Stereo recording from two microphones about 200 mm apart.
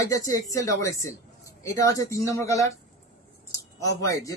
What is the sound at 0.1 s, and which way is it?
Speech, 15° left (ahead or behind).